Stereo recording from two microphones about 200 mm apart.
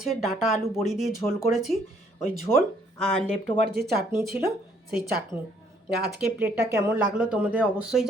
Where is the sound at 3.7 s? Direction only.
50° right (ahead or behind).